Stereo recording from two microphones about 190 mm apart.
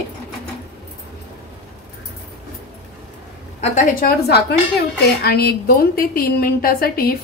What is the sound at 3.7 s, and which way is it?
A woman's voice, 45° left (ahead or behind).